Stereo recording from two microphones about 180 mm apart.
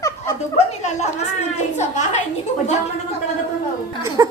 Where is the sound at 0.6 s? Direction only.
40° left (ahead or behind).